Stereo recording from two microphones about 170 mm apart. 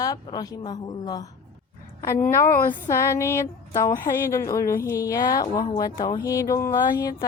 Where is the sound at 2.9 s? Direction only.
15° left (ahead or behind).